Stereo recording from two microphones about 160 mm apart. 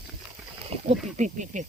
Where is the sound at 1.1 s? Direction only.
50° right (ahead or behind).